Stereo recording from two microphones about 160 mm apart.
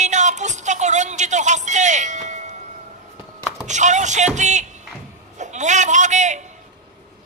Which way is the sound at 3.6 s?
50° right (ahead or behind).